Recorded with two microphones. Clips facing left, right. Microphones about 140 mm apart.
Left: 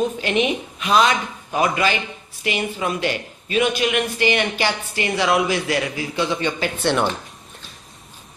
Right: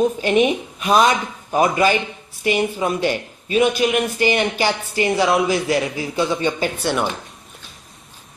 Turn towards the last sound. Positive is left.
turn(degrees=-5)  # may be behind; listen again after turning